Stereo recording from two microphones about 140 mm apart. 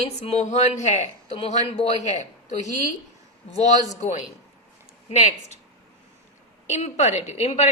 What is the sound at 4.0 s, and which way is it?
A woman's voice, 55° left (ahead or behind).